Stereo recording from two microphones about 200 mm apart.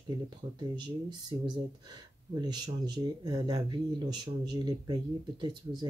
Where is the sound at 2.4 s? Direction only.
20° right (ahead or behind).